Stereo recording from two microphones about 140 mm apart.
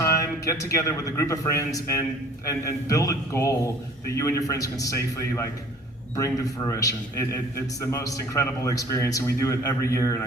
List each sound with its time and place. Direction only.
0.0 s a man's voice: 25° left (ahead or behind)